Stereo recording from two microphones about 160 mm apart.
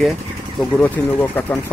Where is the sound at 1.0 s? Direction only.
10° left (ahead or behind).